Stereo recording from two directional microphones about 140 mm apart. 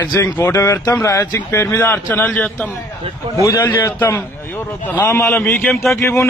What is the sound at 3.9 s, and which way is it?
Speech, 10° left (ahead or behind).